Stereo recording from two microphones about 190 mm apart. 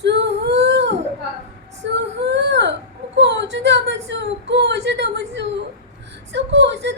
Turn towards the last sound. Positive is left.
turn(degrees=-65)  # may be behind; listen again after turning